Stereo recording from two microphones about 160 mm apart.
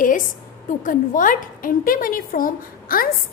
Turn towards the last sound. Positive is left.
turn(degrees=60)  # may be behind; listen again after turning